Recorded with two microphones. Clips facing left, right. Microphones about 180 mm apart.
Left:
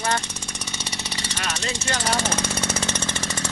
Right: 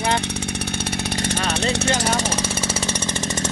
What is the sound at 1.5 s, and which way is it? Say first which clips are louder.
Vehicle: right 6 dB; 60° right (ahead or behind).